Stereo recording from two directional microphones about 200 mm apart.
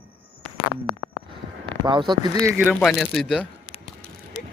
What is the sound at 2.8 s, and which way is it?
Speech, centre (ahead or behind).